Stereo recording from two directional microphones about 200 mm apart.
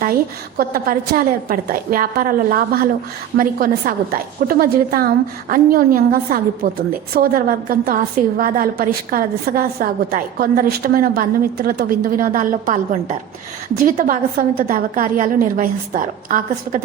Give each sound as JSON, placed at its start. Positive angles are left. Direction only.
{"t": 0.0, "sound": "a woman's voice", "side_deg": -45}